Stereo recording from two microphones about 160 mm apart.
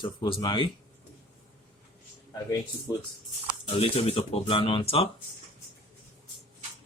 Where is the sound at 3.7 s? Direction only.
40° left (ahead or behind).